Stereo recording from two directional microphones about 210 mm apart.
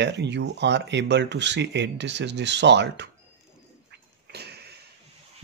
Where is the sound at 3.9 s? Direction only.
50° right (ahead or behind).